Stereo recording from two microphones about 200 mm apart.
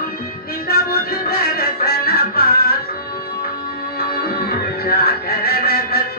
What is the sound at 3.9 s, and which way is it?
Music, 50° left (ahead or behind).